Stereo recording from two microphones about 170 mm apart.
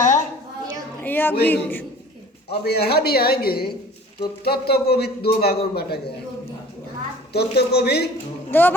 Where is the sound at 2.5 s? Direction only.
70° left (ahead or behind).